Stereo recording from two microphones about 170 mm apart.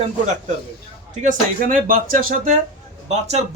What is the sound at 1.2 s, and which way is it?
Speech, 50° right (ahead or behind).